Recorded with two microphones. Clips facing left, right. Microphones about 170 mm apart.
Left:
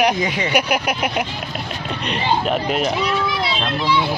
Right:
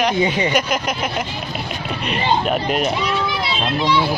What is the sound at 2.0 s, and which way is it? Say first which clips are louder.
Speech: right 1 dB; 10° right (ahead or behind).